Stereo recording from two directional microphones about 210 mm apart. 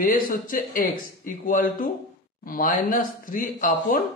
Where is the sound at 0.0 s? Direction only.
45° left (ahead or behind).